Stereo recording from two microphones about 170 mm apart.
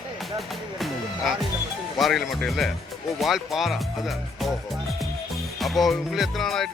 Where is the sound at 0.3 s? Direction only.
Centre (ahead or behind).